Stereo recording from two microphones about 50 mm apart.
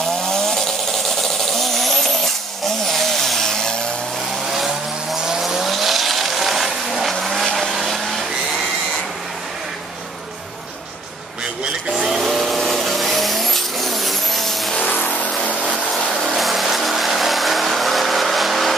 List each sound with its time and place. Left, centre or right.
0.2 s vehicle: centre
2.9 s chainsaw: centre
4.5 s vehicle: centre
11.6 s a sound: centre
12.2 s vehicle: centre
14.8 s vehicle: left
16.1 s vehicle: centre